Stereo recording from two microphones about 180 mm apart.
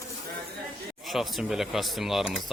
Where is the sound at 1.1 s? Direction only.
Centre (ahead or behind).